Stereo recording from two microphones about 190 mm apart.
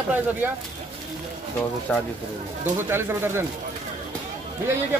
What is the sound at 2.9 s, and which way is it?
Speech, 10° right (ahead or behind).